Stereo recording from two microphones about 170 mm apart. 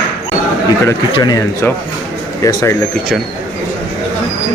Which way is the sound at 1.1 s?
25° left (ahead or behind).